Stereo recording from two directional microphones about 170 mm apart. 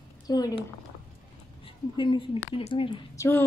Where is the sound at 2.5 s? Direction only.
30° left (ahead or behind).